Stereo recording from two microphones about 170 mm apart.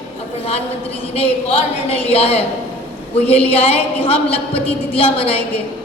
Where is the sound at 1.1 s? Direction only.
35° left (ahead or behind).